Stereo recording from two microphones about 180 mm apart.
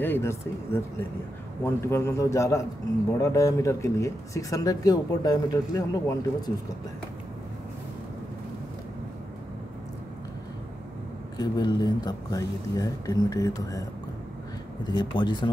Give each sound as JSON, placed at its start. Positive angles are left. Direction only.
{"t": 0.0, "sound": "speech", "side_deg": 15}
{"t": 11.3, "sound": "speech", "side_deg": 20}
{"t": 14.9, "sound": "speech", "side_deg": 25}